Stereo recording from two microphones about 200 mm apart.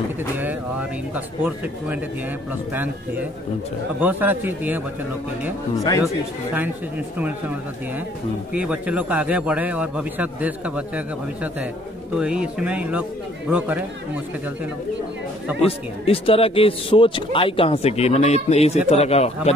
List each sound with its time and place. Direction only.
0.4 s a man's voice: 10° right (ahead or behind)
7.2 s a man's voice: 10° right (ahead or behind)
8.5 s a man's voice: 5° right (ahead or behind)
12.2 s a man's voice: 5° right (ahead or behind)
15.6 s speech: 30° left (ahead or behind)